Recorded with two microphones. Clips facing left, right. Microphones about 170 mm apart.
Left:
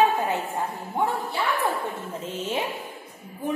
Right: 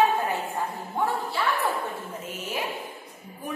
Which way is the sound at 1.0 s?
20° left (ahead or behind).